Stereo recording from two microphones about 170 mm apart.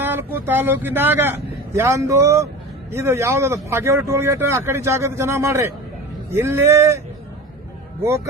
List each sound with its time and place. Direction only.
0.0 s speech: 10° right (ahead or behind)
8.0 s speech: 15° right (ahead or behind)